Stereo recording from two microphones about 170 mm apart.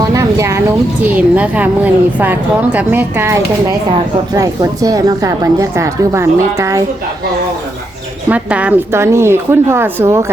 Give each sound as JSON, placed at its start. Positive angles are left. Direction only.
{"t": 0.0, "sound": "a woman's voice", "side_deg": -20}
{"t": 8.3, "sound": "a woman's voice", "side_deg": -10}